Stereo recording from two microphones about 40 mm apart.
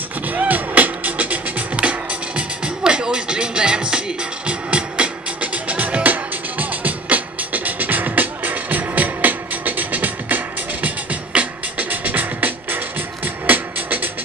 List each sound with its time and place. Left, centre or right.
0.3 s music: right
1.8 s music: right